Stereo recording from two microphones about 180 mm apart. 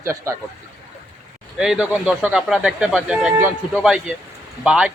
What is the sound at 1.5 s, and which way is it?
Speech, centre (ahead or behind).